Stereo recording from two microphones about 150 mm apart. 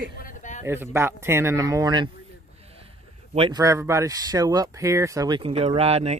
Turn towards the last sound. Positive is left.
turn(degrees=-45)  # may be behind; listen again after turning